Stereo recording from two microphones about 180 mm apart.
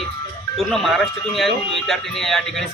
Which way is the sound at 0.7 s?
Centre (ahead or behind).